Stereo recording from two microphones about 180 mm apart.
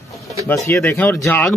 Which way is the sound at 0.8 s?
10° left (ahead or behind).